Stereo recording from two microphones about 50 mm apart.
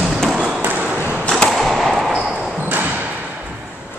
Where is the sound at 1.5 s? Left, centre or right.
Centre.